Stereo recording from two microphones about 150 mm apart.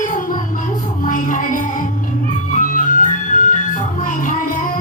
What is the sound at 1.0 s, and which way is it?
Music, 65° left (ahead or behind).